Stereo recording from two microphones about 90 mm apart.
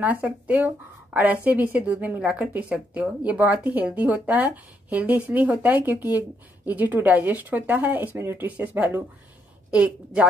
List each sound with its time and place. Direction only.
0.0 s a woman's voice: 20° right (ahead or behind)